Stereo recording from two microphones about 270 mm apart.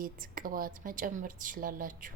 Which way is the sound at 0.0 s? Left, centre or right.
Right.